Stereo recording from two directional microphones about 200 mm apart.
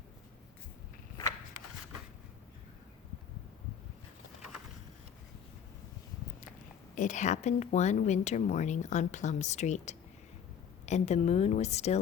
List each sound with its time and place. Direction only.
6.9 s speech: 40° left (ahead or behind)